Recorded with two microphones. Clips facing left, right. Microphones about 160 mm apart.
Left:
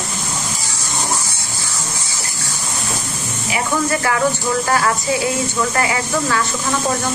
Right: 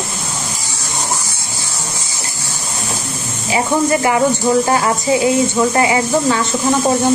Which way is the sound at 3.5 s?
20° right (ahead or behind).